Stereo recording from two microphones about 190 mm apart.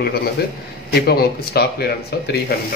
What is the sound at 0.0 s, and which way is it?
A man's voice, 55° left (ahead or behind).